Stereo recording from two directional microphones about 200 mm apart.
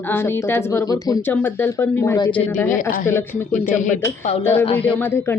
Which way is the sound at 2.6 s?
40° left (ahead or behind).